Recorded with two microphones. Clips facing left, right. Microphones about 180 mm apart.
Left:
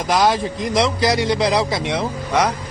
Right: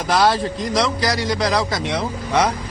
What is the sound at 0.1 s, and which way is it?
A man's voice, 15° left (ahead or behind).